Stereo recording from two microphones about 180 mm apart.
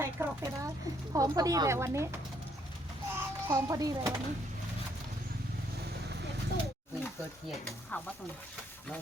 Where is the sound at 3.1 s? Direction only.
15° right (ahead or behind).